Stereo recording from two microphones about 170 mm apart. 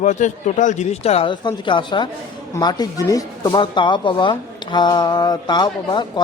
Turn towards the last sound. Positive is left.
turn(degrees=25)  # may be behind; listen again after turning